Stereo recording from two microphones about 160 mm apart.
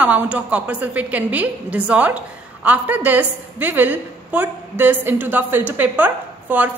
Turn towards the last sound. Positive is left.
turn(degrees=-10)  # may be behind; listen again after turning